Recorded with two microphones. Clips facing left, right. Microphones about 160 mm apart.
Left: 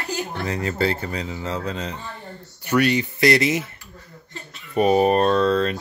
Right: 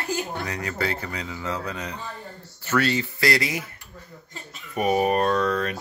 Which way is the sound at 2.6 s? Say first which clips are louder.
Left 4 dB; 15° left (ahead or behind).